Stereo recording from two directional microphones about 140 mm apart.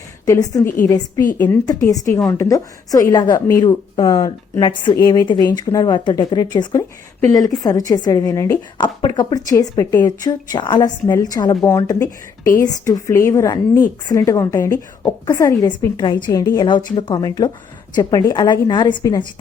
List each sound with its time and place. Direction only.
0.3 s a woman's voice: 25° left (ahead or behind)